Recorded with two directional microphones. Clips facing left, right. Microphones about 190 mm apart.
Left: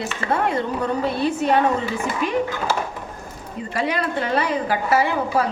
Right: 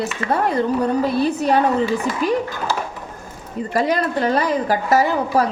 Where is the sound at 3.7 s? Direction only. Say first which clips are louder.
Right 4 dB; 40° right (ahead or behind).